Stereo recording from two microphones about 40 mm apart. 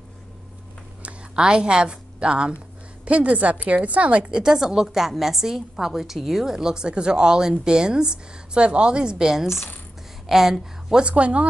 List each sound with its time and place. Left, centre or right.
1.3 s a woman's voice: right
4.3 s a woman's voice: centre
11.0 s a woman's voice: right